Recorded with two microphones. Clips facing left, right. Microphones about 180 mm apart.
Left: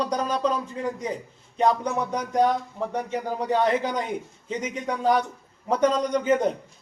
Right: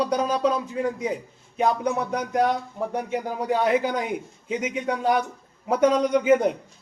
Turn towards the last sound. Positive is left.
turn(degrees=-10)  # may be behind; listen again after turning